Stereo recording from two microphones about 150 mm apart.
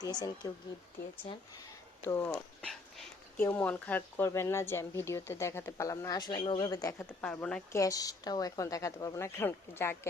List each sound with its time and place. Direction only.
0.0 s speech: 25° left (ahead or behind)
2.0 s speech: 15° left (ahead or behind); by 6.9 s 30° left (ahead or behind)
7.0 s speech: 10° left (ahead or behind)
7.7 s speech: 20° left (ahead or behind)